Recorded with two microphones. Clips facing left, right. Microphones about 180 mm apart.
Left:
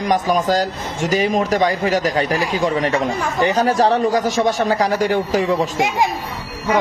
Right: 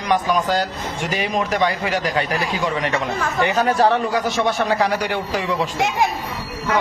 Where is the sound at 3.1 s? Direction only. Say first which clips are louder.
Left 1 dB; 15° left (ahead or behind).